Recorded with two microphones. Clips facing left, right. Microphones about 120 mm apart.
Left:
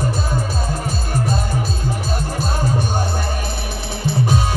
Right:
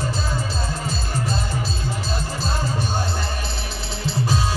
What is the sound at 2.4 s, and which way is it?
Music, 50° left (ahead or behind).